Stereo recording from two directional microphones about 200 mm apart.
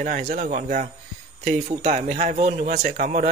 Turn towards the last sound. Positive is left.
turn(degrees=-40)  # may be behind; listen again after turning